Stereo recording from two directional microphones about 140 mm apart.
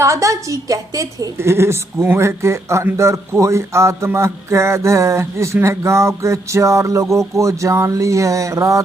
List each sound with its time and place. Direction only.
0.0 s a woman's voice: 20° right (ahead or behind)